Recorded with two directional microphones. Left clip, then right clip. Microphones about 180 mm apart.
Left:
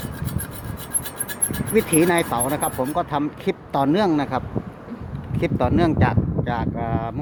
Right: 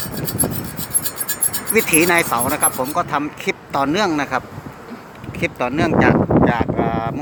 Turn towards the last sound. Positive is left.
turn(degrees=5)  # may be behind; listen again after turning